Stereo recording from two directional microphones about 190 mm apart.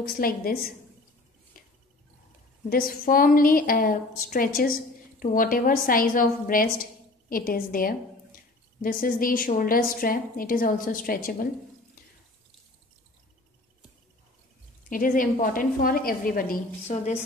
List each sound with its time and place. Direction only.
0.0 s a woman's voice: 50° left (ahead or behind)
1.5 s cricket: 50° left (ahead or behind)
2.7 s a woman's voice: 50° left (ahead or behind)
14.9 s a woman's voice: 45° left (ahead or behind)